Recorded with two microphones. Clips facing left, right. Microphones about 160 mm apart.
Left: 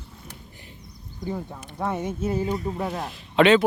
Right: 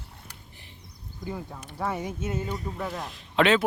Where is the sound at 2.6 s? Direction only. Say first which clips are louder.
Left 5 dB; 25° left (ahead or behind).